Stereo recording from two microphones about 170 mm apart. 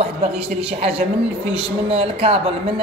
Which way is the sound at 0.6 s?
35° right (ahead or behind).